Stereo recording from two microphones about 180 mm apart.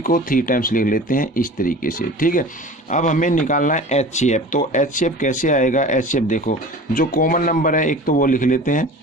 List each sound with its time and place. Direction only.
0.0 s speech: 50° left (ahead or behind)